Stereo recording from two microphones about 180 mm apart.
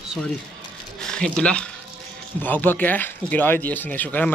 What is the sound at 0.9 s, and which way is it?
Speech, 5° left (ahead or behind).